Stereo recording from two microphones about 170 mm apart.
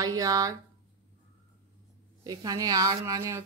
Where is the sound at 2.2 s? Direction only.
20° right (ahead or behind).